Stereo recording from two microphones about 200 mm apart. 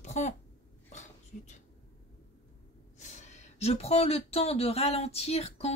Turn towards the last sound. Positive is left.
turn(degrees=30)  # may be behind; listen again after turning